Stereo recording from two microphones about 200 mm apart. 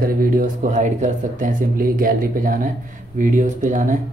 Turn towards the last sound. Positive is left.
turn(degrees=-40)  # may be behind; listen again after turning